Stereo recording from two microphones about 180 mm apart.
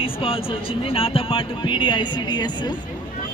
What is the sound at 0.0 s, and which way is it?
Speech, 30° left (ahead or behind).